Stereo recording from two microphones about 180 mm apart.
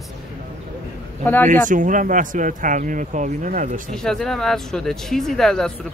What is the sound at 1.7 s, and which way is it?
Speech, 45° right (ahead or behind).